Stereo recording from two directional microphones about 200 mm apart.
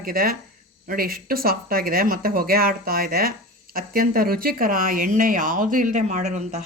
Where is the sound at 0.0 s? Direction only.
45° right (ahead or behind).